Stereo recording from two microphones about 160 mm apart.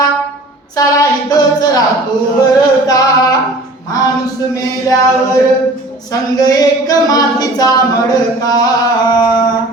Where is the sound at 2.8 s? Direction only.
25° left (ahead or behind).